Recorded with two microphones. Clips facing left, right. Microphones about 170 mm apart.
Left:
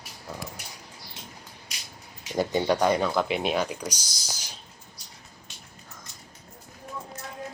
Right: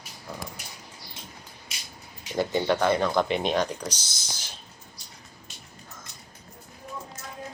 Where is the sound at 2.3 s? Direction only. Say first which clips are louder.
Even; 15° left (ahead or behind).